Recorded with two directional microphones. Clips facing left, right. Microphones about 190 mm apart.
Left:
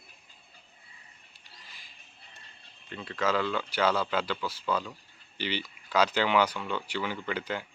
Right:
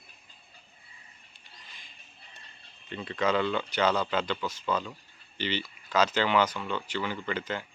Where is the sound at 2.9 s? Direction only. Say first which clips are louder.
Right 2 dB; centre (ahead or behind).